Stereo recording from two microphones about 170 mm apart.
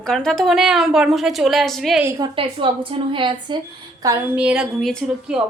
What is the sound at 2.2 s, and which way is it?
A woman's voice, 30° right (ahead or behind).